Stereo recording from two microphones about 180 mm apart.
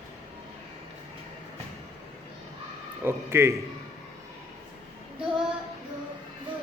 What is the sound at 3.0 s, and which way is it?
Speech, 15° right (ahead or behind).